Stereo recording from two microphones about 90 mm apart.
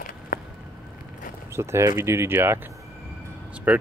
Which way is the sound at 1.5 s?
30° right (ahead or behind).